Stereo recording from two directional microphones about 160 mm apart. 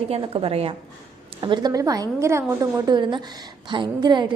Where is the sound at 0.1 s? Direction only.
35° right (ahead or behind).